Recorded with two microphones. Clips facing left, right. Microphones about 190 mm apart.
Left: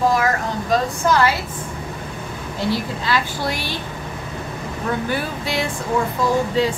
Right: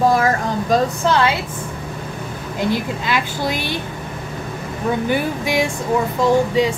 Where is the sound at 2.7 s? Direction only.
15° right (ahead or behind).